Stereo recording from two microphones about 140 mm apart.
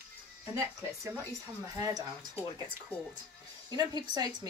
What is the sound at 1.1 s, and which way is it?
Speech, 20° right (ahead or behind).